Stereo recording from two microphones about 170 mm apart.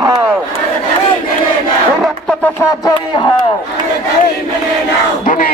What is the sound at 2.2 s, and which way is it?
Music, 10° left (ahead or behind).